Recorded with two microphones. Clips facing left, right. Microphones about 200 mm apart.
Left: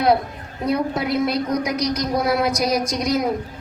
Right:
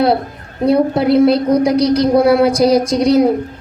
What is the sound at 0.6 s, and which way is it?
A woman's voice, 30° right (ahead or behind).